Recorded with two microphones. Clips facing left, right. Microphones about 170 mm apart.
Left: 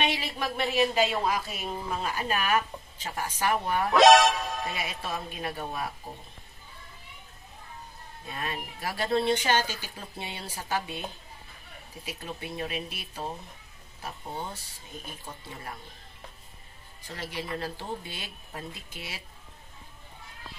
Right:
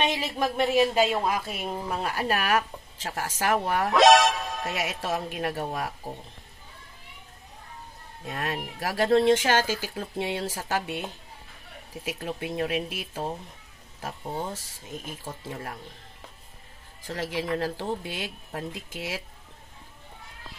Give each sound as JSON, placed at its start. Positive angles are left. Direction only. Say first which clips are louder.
{"t": 0.2, "sound": "a woman's voice", "louder": "right 5 dB", "side_deg": -45}
{"t": 3.9, "sound": "music", "louder": "even", "side_deg": 0}
{"t": 4.7, "sound": "speech", "louder": "right 5 dB", "side_deg": -90}
{"t": 8.3, "sound": "speech", "louder": "right 4 dB", "side_deg": -90}
{"t": 14.5, "sound": "speech", "louder": "right 5 dB", "side_deg": -90}
{"t": 17.0, "sound": "speech", "louder": "right 6 dB", "side_deg": -90}